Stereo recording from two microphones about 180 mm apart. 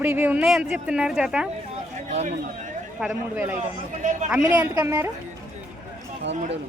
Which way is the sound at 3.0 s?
10° right (ahead or behind).